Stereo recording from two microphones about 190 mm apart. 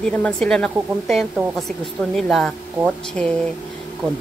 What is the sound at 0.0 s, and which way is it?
Speech, 5° left (ahead or behind).